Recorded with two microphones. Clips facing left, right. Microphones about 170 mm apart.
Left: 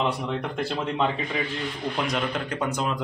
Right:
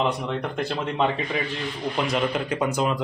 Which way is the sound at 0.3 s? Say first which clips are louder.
Right 1 dB; 5° left (ahead or behind).